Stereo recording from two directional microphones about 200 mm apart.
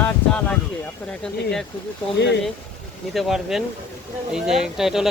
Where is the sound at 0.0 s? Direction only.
5° left (ahead or behind).